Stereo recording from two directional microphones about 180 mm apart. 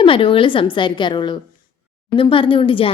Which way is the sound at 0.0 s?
30° left (ahead or behind).